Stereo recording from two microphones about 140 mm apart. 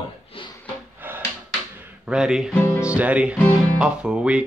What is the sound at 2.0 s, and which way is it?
Music, 5° right (ahead or behind).